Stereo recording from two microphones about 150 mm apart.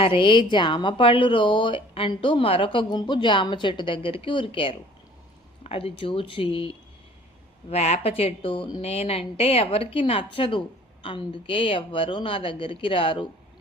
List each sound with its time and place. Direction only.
0.0 s speech: 35° left (ahead or behind)